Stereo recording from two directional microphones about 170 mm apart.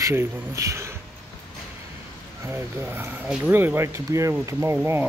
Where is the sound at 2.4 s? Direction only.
15° right (ahead or behind).